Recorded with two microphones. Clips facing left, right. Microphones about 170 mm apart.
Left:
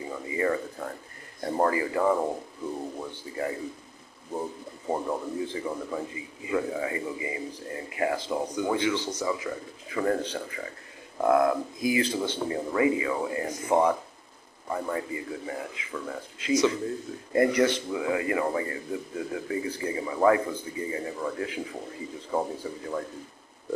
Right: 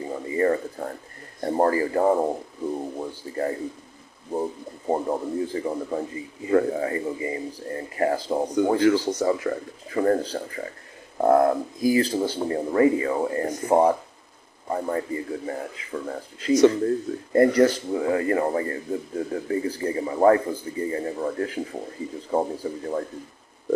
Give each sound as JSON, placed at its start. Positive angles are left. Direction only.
{"t": 0.1, "sound": "a sound", "side_deg": -40}
{"t": 1.4, "sound": "a man's voice", "side_deg": -40}
{"t": 9.9, "sound": "a man's voice", "side_deg": -40}